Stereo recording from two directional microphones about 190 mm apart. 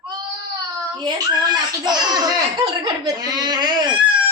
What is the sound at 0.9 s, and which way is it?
Speech, 20° right (ahead or behind).